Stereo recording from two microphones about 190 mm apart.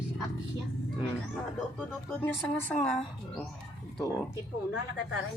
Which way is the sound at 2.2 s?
10° left (ahead or behind).